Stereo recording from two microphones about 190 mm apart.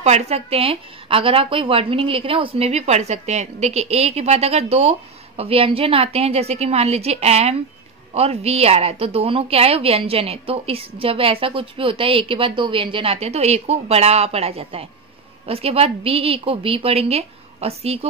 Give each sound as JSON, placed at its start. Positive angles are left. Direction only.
{"t": 0.0, "sound": "a woman's voice", "side_deg": -35}